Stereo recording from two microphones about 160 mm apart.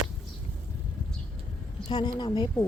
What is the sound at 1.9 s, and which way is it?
Speech, 25° left (ahead or behind).